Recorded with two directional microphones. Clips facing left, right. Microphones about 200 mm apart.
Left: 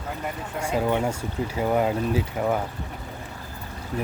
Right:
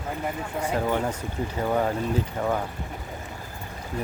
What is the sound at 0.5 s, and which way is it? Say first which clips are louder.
Speech: left 2 dB; 10° left (ahead or behind).